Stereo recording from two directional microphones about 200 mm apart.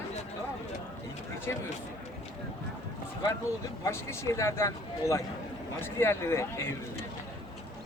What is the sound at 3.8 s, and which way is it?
A man's voice, 15° left (ahead or behind).